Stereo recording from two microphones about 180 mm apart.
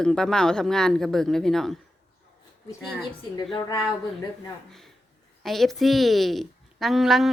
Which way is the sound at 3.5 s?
25° left (ahead or behind).